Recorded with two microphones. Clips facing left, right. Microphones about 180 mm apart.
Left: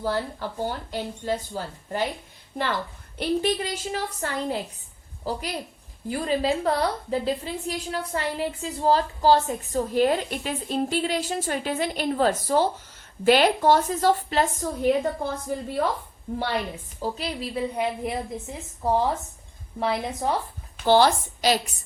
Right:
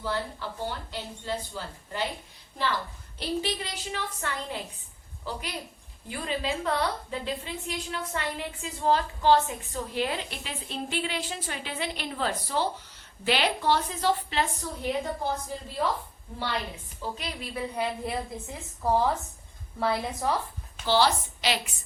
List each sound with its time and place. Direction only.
0.0 s a woman's voice: 45° left (ahead or behind)
3.2 s a woman's voice: 50° left (ahead or behind)
17.0 s a woman's voice: 35° left (ahead or behind)
17.7 s a woman's voice: 20° left (ahead or behind)
20.8 s a woman's voice: 50° left (ahead or behind)